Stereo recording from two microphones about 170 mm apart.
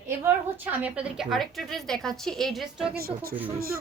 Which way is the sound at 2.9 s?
65° right (ahead or behind).